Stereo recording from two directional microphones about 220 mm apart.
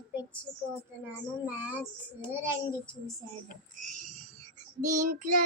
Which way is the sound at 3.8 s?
35° right (ahead or behind).